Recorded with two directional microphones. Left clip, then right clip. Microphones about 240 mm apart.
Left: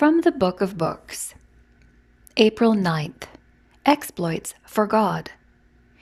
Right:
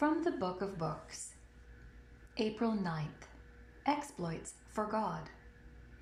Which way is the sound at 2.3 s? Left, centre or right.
Left.